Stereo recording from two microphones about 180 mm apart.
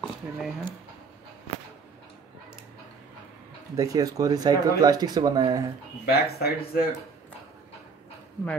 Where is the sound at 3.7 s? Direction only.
20° right (ahead or behind).